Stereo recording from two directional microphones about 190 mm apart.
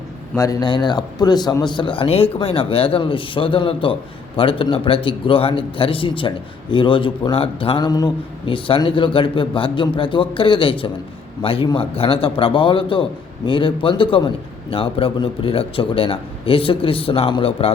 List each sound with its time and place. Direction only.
0.3 s a man's voice: 15° left (ahead or behind)